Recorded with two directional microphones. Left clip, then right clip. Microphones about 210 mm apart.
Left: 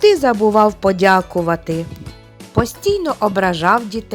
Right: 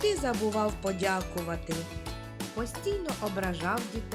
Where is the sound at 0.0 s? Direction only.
35° left (ahead or behind).